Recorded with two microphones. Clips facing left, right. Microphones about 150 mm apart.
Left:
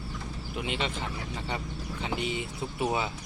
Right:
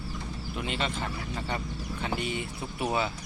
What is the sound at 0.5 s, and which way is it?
Speech, 15° left (ahead or behind).